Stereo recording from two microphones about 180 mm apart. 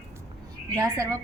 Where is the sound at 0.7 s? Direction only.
15° right (ahead or behind).